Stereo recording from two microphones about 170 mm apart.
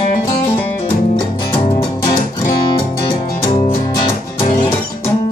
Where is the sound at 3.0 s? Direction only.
30° left (ahead or behind).